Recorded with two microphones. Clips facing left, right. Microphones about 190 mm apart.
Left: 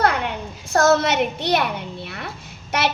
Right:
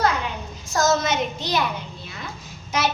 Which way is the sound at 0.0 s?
60° left (ahead or behind).